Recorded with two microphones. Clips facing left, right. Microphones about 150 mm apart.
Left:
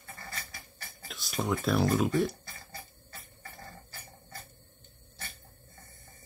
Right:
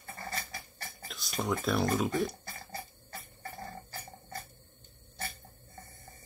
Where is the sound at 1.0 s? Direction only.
Centre (ahead or behind).